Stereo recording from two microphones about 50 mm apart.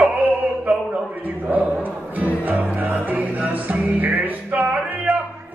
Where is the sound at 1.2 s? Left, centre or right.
Right.